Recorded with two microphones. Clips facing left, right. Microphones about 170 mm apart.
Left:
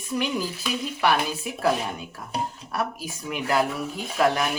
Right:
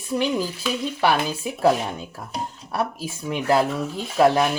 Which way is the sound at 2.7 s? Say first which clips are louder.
Right 4 dB; 30° right (ahead or behind).